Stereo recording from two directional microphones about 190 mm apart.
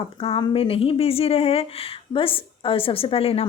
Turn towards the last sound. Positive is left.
turn(degrees=30)  # may be behind; listen again after turning